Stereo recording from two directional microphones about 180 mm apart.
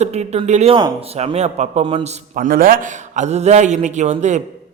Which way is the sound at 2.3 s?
50° right (ahead or behind).